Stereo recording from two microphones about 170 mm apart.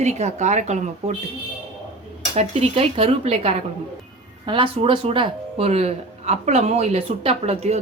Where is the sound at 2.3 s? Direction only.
35° right (ahead or behind).